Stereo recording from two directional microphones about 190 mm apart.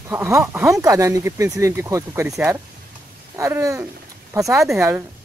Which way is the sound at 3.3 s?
15° right (ahead or behind).